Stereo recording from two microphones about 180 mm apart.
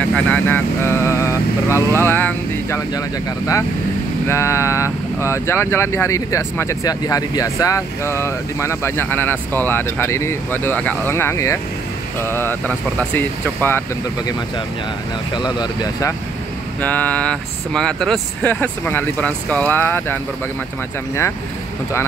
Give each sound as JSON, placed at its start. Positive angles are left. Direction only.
{"t": 0.0, "sound": "speech", "side_deg": 10}
{"t": 4.3, "sound": "speech", "side_deg": 15}
{"t": 15.3, "sound": "speech", "side_deg": 25}
{"t": 16.8, "sound": "speech", "side_deg": 10}